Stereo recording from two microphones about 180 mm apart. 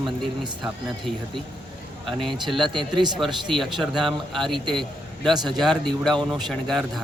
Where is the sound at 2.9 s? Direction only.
25° right (ahead or behind).